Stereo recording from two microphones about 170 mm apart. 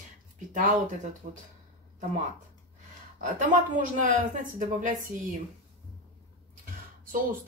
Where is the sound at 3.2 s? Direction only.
50° right (ahead or behind).